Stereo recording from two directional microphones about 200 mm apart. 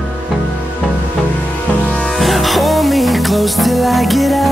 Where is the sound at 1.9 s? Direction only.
Centre (ahead or behind).